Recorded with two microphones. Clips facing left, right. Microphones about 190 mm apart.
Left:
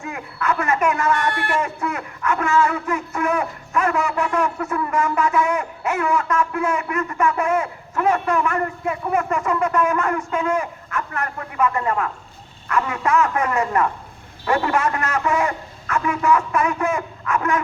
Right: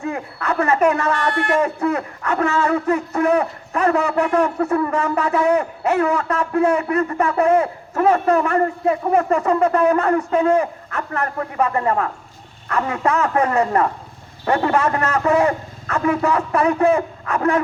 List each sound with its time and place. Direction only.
0.0 s a man's voice: 35° right (ahead or behind)